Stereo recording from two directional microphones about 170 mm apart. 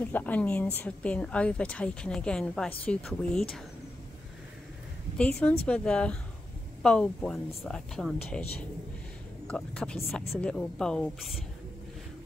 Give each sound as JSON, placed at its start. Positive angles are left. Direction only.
{"t": 0.0, "sound": "a woman's voice", "side_deg": 10}
{"t": 5.1, "sound": "a woman's voice", "side_deg": 5}
{"t": 9.5, "sound": "speech", "side_deg": 5}